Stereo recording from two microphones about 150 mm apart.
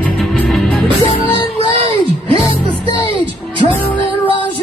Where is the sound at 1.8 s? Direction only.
40° right (ahead or behind).